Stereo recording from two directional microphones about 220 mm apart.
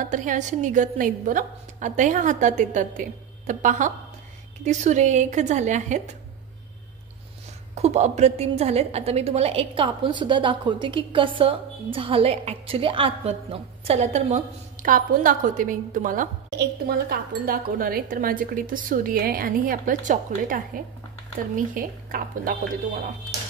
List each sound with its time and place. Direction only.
0.0 s a woman's voice: 35° right (ahead or behind)
7.7 s a woman's voice: 30° right (ahead or behind)